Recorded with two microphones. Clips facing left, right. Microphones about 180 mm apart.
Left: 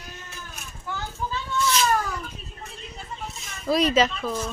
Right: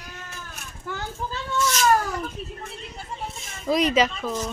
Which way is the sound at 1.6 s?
45° right (ahead or behind).